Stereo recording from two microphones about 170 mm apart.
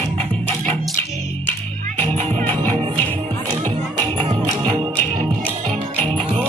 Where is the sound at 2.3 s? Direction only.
10° left (ahead or behind).